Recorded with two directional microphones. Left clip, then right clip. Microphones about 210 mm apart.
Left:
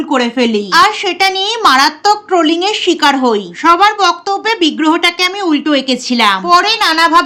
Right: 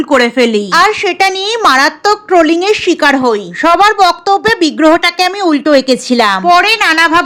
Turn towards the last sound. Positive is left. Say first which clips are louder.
# right 1 dB
turn(degrees=-20)  # may be behind; listen again after turning